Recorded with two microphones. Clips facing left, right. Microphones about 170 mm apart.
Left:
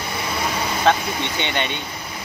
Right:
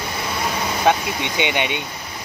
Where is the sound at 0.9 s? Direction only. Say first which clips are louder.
Right 1 dB; 15° right (ahead or behind).